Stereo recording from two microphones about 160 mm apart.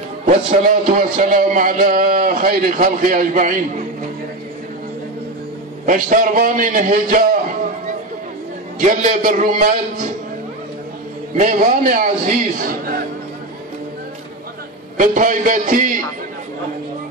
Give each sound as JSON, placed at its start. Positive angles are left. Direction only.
{"t": 0.5, "sound": "a man's voice", "side_deg": -55}
{"t": 5.9, "sound": "a man's voice", "side_deg": -55}
{"t": 8.7, "sound": "a man's voice", "side_deg": -55}
{"t": 11.3, "sound": "a man's voice", "side_deg": -55}
{"t": 15.0, "sound": "a man's voice", "side_deg": -55}